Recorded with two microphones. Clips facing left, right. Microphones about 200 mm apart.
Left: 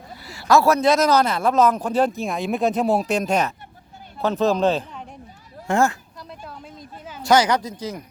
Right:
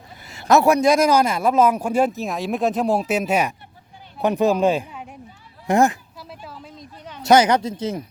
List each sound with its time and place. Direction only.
0.3 s a man's voice: 20° right (ahead or behind)
5.6 s a man's voice: 20° right (ahead or behind)
6.1 s a sound: centre (ahead or behind)
7.2 s speech: 20° right (ahead or behind)